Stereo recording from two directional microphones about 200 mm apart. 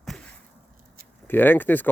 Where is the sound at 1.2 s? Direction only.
10° left (ahead or behind).